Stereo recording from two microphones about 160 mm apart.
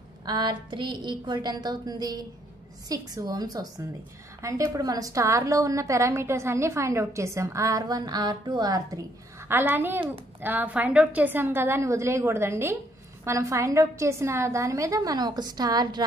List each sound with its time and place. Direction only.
0.2 s a woman's voice: 25° right (ahead or behind)
9.5 s a woman's voice: 10° right (ahead or behind)